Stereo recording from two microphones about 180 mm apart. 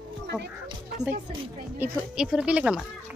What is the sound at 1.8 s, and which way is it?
Speech, 5° right (ahead or behind).